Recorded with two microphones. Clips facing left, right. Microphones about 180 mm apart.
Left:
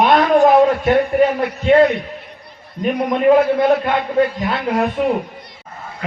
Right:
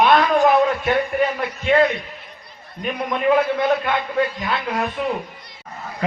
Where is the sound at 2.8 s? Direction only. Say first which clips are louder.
Left 6 dB; 30° left (ahead or behind).